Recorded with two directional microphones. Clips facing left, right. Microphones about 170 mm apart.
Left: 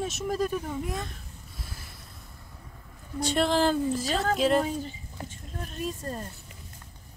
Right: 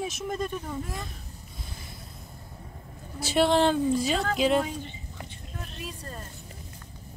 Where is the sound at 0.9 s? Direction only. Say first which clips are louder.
Left 3 dB; centre (ahead or behind).